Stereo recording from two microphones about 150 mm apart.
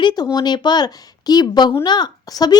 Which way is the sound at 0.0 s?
30° left (ahead or behind).